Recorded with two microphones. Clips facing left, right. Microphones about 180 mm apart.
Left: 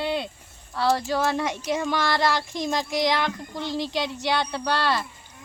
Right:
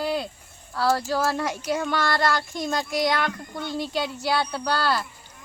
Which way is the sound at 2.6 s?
20° left (ahead or behind).